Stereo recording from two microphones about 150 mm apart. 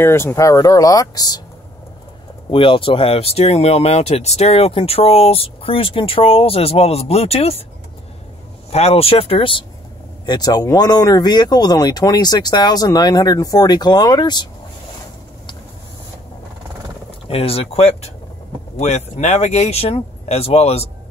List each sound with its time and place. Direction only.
0.0 s speech: 15° left (ahead or behind)
2.5 s speech: 35° left (ahead or behind)
8.6 s speech: 45° left (ahead or behind)
17.3 s speech: 40° left (ahead or behind)